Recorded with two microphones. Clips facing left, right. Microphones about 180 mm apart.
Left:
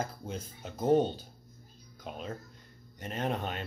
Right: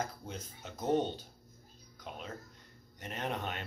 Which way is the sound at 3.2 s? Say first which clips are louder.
Left 4 dB; 35° left (ahead or behind).